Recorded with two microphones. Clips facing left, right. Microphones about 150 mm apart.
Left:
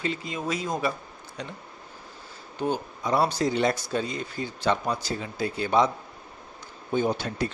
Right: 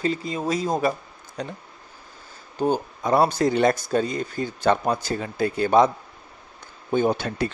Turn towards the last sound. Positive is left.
turn(degrees=-60)  # may be behind; listen again after turning